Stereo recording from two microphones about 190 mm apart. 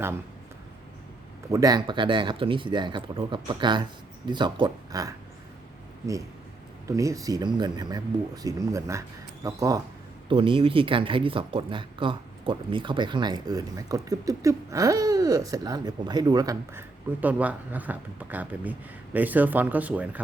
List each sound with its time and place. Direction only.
1.5 s speech: 20° right (ahead or behind)
6.8 s speech: 15° right (ahead or behind)